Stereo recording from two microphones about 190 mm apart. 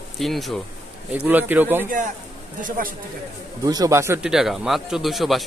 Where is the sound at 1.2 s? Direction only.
10° right (ahead or behind).